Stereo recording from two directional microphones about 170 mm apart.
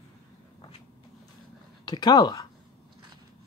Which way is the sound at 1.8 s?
25° left (ahead or behind).